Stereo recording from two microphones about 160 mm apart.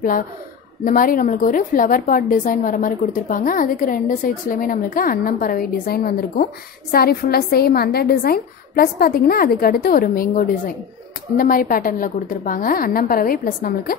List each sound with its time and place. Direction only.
0.8 s a woman's voice: 60° left (ahead or behind)